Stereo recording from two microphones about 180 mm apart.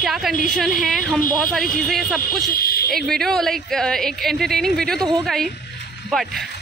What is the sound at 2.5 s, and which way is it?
Speech, 55° left (ahead or behind).